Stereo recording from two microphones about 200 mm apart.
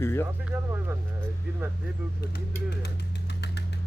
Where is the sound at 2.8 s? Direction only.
55° left (ahead or behind).